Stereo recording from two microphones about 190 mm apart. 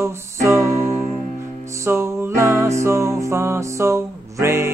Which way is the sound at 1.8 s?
15° right (ahead or behind).